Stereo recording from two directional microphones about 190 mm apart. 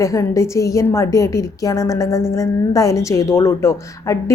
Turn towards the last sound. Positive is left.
turn(degrees=15)  # may be behind; listen again after turning